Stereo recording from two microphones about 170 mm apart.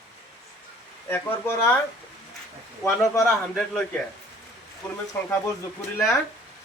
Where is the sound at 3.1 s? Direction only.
5° left (ahead or behind).